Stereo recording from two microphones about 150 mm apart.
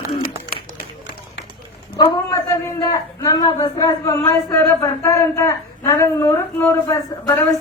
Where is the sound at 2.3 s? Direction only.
20° left (ahead or behind).